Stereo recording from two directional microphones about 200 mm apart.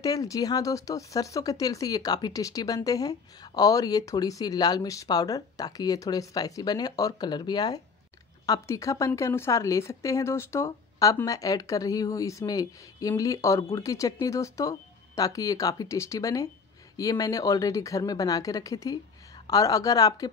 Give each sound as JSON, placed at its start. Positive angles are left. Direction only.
{"t": 0.0, "sound": "speech", "side_deg": 15}